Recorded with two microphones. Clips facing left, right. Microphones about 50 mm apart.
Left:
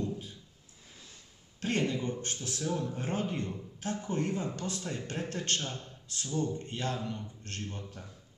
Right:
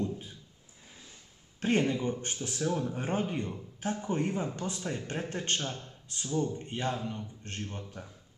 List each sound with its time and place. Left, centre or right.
1.6 s speech: right
5.7 s speech: centre
6.2 s speech: centre
7.0 s a man's voice: centre